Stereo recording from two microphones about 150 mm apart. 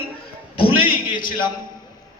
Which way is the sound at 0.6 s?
35° left (ahead or behind).